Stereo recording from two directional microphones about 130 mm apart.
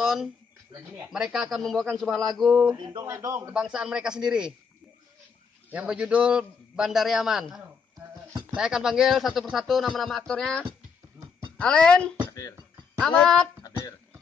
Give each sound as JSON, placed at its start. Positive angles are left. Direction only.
{"t": 0.0, "sound": "a sound", "side_deg": -5}
{"t": 1.1, "sound": "a man's voice", "side_deg": -5}
{"t": 3.0, "sound": "speech", "side_deg": -25}
{"t": 3.4, "sound": "a man's voice", "side_deg": -5}
{"t": 5.7, "sound": "a man's voice", "side_deg": -10}
{"t": 11.6, "sound": "a woman's voice", "side_deg": 5}